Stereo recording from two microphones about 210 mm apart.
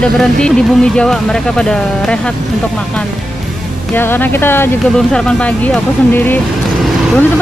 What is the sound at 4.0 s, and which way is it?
Speech, 10° left (ahead or behind).